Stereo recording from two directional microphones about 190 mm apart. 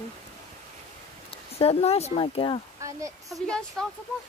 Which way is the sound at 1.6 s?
30° left (ahead or behind).